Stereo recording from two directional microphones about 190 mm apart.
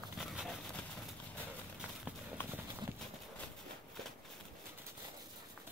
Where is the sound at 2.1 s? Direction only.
5° right (ahead or behind).